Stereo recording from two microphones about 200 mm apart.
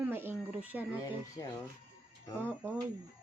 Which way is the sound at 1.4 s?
15° left (ahead or behind).